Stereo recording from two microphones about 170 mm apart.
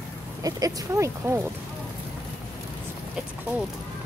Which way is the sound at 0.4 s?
20° right (ahead or behind).